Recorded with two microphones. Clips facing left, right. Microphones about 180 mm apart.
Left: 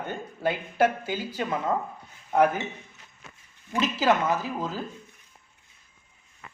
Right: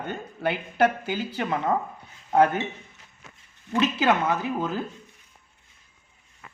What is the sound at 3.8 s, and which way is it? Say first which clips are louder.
Speech: right 1 dB; 65° right (ahead or behind).